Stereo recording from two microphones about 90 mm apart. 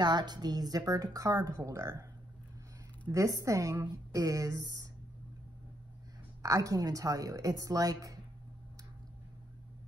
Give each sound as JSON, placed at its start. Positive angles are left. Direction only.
{"t": 0.0, "sound": "a woman's voice", "side_deg": -55}
{"t": 3.1, "sound": "a woman's voice", "side_deg": -35}
{"t": 6.4, "sound": "a woman's voice", "side_deg": -40}